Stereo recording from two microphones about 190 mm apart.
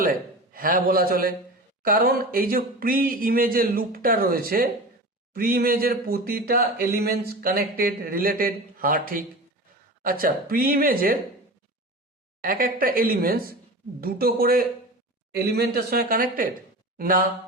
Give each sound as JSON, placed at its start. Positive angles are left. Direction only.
{"t": 0.5, "sound": "speech", "side_deg": -50}
{"t": 12.4, "sound": "speech", "side_deg": -50}